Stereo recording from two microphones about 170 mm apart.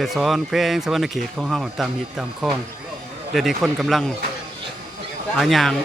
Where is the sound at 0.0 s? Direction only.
Centre (ahead or behind).